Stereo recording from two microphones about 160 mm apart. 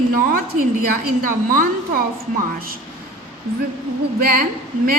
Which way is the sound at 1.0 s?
65° right (ahead or behind).